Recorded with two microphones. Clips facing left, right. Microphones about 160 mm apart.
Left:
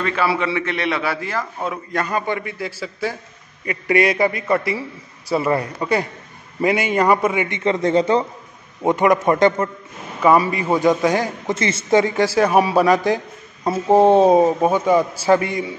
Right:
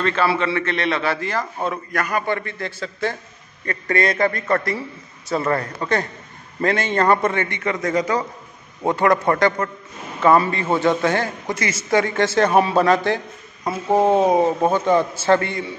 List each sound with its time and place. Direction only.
0.0 s a man's voice: 10° left (ahead or behind)
1.9 s a man's voice: 25° left (ahead or behind)
13.9 s speech: 30° left (ahead or behind)
14.4 s a man's voice: 10° left (ahead or behind)